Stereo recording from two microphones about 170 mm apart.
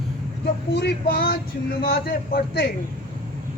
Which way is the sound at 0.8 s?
65° left (ahead or behind).